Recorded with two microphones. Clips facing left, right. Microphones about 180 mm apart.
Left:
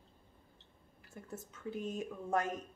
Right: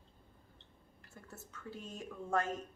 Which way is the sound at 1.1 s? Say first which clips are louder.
Left 6 dB; 20° left (ahead or behind).